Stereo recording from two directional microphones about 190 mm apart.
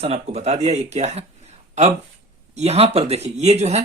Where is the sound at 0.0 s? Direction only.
30° right (ahead or behind).